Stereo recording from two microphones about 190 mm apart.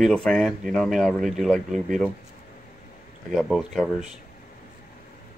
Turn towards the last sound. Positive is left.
turn(degrees=0)  # may be behind; listen again after turning